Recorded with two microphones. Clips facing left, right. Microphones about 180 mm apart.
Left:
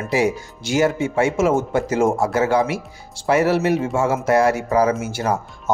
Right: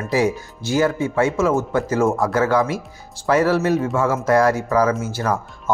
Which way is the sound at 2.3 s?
10° left (ahead or behind).